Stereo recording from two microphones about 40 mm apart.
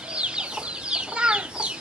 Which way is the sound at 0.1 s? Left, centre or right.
Right.